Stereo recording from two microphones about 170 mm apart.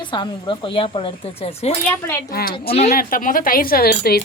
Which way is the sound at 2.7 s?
40° left (ahead or behind).